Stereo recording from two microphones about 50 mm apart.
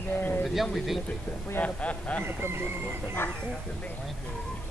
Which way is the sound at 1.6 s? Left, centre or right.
Left.